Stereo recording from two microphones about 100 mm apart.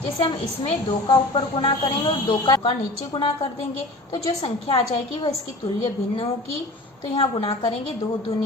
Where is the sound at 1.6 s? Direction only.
60° left (ahead or behind).